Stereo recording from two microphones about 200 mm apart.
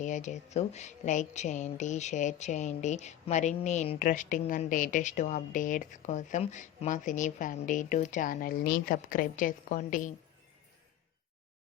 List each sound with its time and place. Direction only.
0.0 s speech: 35° left (ahead or behind)